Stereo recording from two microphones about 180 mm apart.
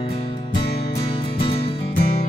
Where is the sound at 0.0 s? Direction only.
30° left (ahead or behind).